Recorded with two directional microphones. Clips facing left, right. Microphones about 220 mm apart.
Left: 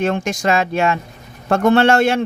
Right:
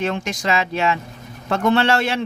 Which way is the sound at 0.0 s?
50° left (ahead or behind).